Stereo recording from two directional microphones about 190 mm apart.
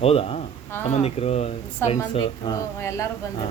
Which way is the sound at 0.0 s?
30° left (ahead or behind).